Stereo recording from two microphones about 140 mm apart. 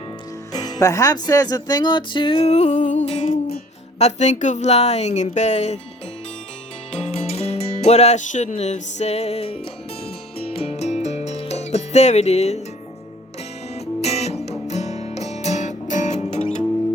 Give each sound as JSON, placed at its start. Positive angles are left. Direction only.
{"t": 0.5, "sound": "speech", "side_deg": 25}
{"t": 2.5, "sound": "speech", "side_deg": 55}
{"t": 7.0, "sound": "speech", "side_deg": 45}
{"t": 10.4, "sound": "music", "side_deg": 45}
{"t": 13.7, "sound": "music", "side_deg": 50}